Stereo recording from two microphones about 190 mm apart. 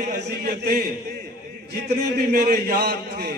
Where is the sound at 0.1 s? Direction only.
55° right (ahead or behind).